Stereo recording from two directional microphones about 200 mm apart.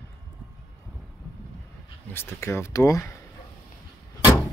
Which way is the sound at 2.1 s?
10° left (ahead or behind).